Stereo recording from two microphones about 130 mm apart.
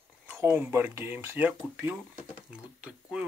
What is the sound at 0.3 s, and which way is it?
Speech, 15° right (ahead or behind).